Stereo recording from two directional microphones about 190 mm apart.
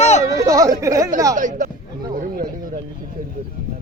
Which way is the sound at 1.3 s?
45° right (ahead or behind).